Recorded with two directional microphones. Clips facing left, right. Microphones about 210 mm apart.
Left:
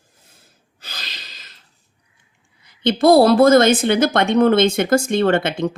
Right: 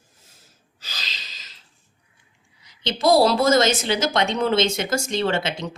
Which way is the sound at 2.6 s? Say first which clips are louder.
Left 7 dB; 55° left (ahead or behind).